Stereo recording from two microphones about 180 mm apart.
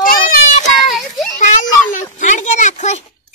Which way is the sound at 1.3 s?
45° left (ahead or behind).